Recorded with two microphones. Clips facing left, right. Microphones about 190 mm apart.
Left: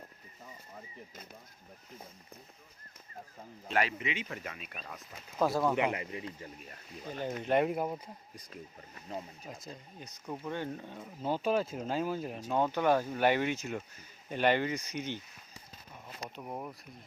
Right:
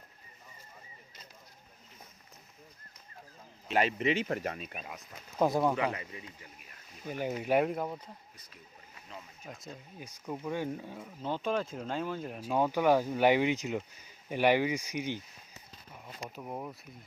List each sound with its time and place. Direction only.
3.7 s speech: 20° right (ahead or behind)
4.0 s speech: 40° right (ahead or behind)
4.7 s speech: 15° right (ahead or behind)
5.7 s speech: 25° left (ahead or behind)
7.1 s speech: 10° right (ahead or behind)
7.7 s speech: 10° left (ahead or behind)
10.0 s speech: 10° right (ahead or behind)
11.0 s speech: 10° left (ahead or behind)
12.5 s speech: 10° right (ahead or behind)
16.3 s speech: centre (ahead or behind)